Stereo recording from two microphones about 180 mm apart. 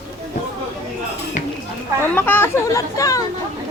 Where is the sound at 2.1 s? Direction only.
10° left (ahead or behind).